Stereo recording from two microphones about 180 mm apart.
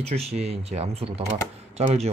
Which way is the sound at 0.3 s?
35° right (ahead or behind).